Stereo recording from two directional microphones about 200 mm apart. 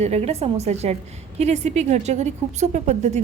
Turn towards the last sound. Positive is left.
turn(degrees=-35)  # may be behind; listen again after turning